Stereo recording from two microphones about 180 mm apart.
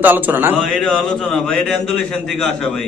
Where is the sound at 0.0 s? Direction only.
10° right (ahead or behind).